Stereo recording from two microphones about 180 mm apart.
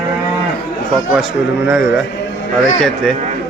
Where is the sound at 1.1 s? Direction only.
Centre (ahead or behind).